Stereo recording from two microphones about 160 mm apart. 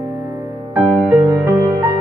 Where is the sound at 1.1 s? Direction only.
15° right (ahead or behind).